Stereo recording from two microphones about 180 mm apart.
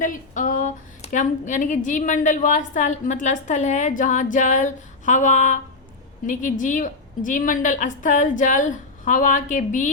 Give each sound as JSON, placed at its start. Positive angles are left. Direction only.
{"t": 0.0, "sound": "a woman's voice", "side_deg": 45}